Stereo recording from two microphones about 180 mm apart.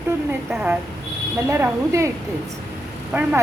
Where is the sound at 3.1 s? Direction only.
10° right (ahead or behind).